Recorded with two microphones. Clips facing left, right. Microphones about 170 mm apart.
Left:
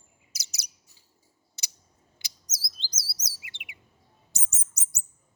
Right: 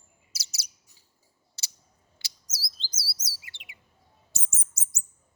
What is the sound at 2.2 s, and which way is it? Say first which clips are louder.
Chirp: right 1 dB; 20° left (ahead or behind).